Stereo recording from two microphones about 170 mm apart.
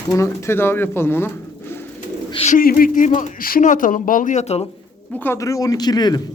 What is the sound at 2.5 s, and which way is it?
Speech, 55° left (ahead or behind).